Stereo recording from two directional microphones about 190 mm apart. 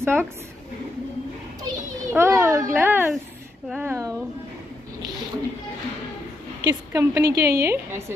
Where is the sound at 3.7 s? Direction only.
10° right (ahead or behind).